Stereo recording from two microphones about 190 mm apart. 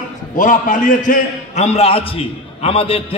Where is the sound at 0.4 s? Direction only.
45° left (ahead or behind).